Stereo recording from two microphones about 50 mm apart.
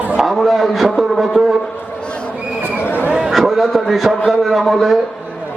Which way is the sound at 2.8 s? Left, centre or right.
Left.